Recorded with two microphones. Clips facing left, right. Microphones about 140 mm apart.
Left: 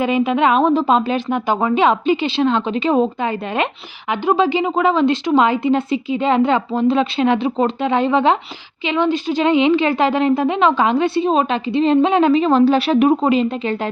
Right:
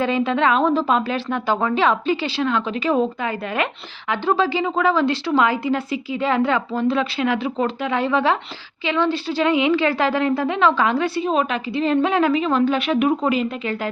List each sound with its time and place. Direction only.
0.0 s a woman's voice: 15° left (ahead or behind)